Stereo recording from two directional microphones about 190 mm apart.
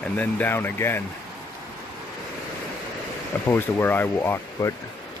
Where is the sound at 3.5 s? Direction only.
10° left (ahead or behind).